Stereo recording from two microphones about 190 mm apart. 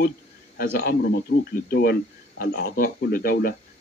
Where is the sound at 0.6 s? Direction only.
55° left (ahead or behind).